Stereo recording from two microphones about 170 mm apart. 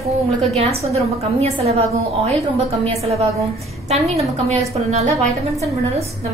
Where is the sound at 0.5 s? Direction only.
35° right (ahead or behind).